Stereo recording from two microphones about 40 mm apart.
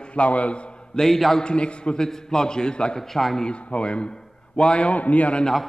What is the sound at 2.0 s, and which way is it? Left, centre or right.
Speech, centre.